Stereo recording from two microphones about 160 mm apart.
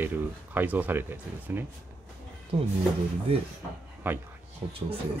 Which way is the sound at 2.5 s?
35° right (ahead or behind).